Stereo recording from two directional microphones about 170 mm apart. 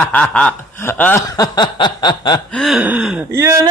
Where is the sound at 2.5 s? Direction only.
Centre (ahead or behind).